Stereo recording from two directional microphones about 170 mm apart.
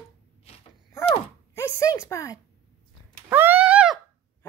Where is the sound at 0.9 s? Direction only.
15° left (ahead or behind).